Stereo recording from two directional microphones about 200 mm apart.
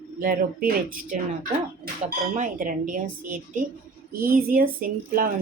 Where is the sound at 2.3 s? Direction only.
40° right (ahead or behind).